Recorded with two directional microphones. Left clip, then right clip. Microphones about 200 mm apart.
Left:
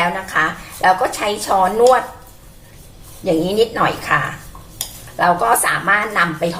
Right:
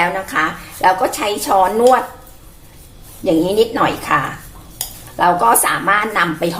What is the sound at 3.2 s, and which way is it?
Speech, 30° right (ahead or behind).